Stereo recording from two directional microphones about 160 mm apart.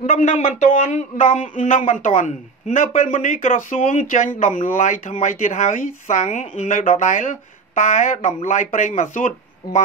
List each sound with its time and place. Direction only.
0.0 s a man's voice: 50° left (ahead or behind)